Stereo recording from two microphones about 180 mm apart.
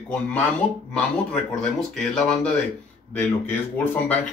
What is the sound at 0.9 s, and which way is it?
Speech, 5° left (ahead or behind).